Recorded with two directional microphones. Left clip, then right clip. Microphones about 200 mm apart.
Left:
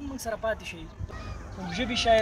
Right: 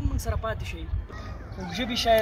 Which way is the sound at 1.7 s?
10° left (ahead or behind).